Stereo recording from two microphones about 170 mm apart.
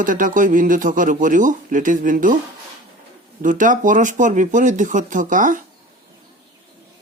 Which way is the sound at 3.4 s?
50° right (ahead or behind).